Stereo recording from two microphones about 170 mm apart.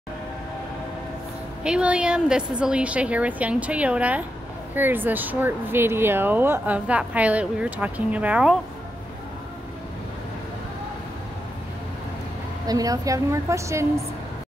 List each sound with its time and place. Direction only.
1.6 s speech: 5° right (ahead or behind)
12.6 s a woman's voice: 20° right (ahead or behind)